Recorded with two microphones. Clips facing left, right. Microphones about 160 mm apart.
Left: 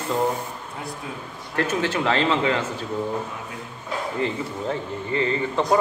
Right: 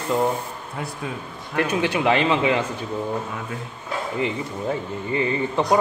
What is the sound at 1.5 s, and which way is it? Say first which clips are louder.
Speech: right 2 dB; 15° right (ahead or behind).